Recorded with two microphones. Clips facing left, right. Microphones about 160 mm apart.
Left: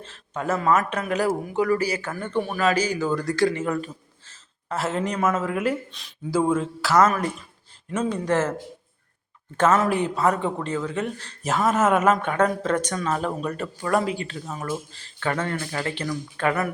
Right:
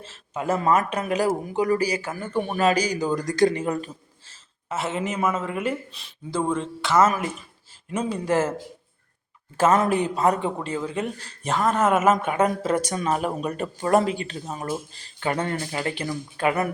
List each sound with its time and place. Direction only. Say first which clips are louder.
0.0 s speech: right 1 dB; 10° right (ahead or behind)
0.5 s speech: even; 25° right (ahead or behind); by 2.4 s 10° right (ahead or behind)
2.5 s speech: right 2 dB; 20° right (ahead or behind)
4.7 s speech: left 1 dB; centre (ahead or behind)
9.9 s speech: right 1 dB; 20° right (ahead or behind)
11.4 s speech: left 1 dB; 5° left (ahead or behind); by 14.8 s 25° right (ahead or behind)
14.9 s speech: right 1 dB; 15° right (ahead or behind)